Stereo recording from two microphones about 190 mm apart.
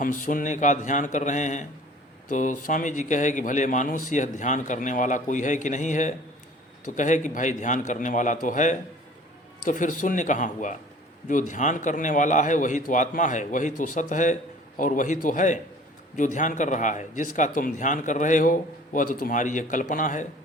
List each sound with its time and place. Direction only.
0.0 s speech: 45° left (ahead or behind)